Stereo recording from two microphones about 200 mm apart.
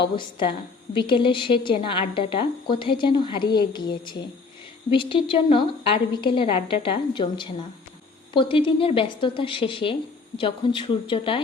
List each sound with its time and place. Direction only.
0.2 s a woman's voice: 25° left (ahead or behind)